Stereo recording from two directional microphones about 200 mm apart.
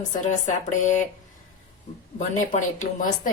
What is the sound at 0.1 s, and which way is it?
Speech, 40° left (ahead or behind).